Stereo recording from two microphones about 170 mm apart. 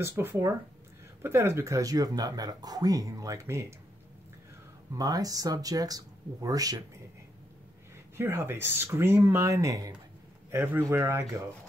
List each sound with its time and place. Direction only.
0.0 s speech: 10° right (ahead or behind)
4.9 s speech: 20° right (ahead or behind)
8.2 s speech: 15° right (ahead or behind)